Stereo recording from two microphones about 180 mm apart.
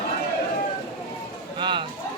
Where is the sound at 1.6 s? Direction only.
25° right (ahead or behind).